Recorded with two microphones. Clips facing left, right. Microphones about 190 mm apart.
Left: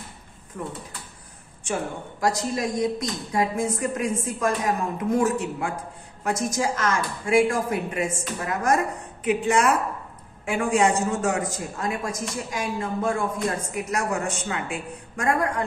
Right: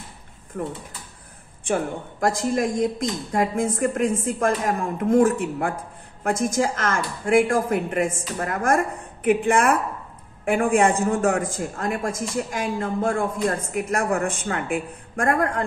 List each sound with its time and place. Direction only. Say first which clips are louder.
1.6 s a woman's voice: right 4 dB; 55° right (ahead or behind)